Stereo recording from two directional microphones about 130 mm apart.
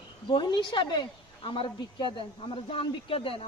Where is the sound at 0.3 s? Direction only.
35° left (ahead or behind).